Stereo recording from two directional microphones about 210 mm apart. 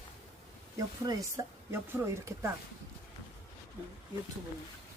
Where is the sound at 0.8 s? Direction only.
15° right (ahead or behind).